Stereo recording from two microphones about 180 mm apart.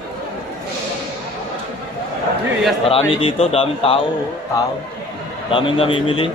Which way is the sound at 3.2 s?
30° left (ahead or behind).